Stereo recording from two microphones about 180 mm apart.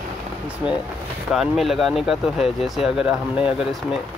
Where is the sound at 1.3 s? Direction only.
Centre (ahead or behind).